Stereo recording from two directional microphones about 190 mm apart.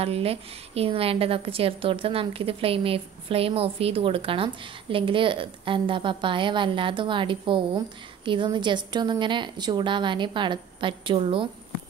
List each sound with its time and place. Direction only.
0.0 s a woman's voice: 30° right (ahead or behind)